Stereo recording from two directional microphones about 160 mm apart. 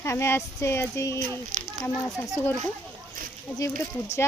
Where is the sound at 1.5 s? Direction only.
50° right (ahead or behind).